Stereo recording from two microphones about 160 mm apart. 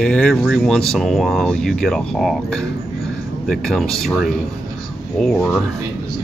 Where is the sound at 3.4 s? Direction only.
Centre (ahead or behind).